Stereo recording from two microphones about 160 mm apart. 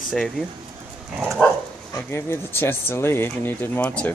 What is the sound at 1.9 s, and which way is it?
Speech, 15° left (ahead or behind).